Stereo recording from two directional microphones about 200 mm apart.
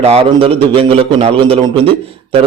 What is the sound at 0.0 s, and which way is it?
A man's voice, 30° right (ahead or behind).